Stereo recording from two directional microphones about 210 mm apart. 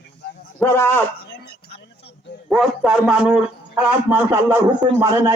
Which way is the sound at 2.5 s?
Centre (ahead or behind).